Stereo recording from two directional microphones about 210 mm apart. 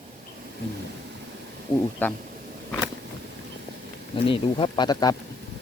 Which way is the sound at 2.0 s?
10° left (ahead or behind).